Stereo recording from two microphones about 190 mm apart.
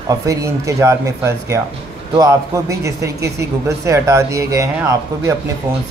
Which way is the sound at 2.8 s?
15° right (ahead or behind).